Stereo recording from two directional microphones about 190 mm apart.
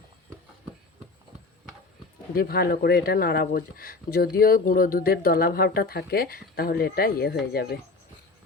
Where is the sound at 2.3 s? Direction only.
50° left (ahead or behind).